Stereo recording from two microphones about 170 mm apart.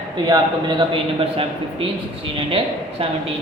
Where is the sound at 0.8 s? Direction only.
30° right (ahead or behind).